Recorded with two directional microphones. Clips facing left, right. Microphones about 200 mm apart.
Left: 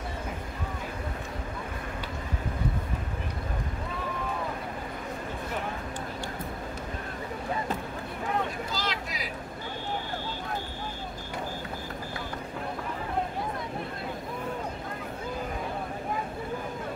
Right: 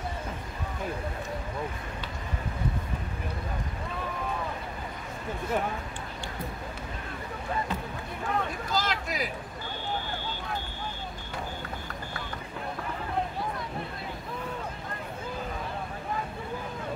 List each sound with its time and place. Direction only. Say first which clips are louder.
8.7 s vehicle: right 4 dB; 50° right (ahead or behind)